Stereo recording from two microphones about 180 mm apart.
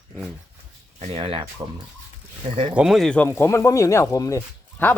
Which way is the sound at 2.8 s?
Centre (ahead or behind).